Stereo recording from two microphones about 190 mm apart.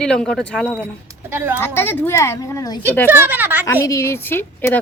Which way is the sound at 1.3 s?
10° right (ahead or behind).